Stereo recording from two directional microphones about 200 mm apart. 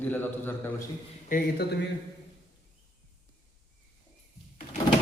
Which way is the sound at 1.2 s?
45° left (ahead or behind).